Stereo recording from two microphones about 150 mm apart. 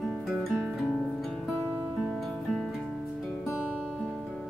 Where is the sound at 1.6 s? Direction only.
15° right (ahead or behind).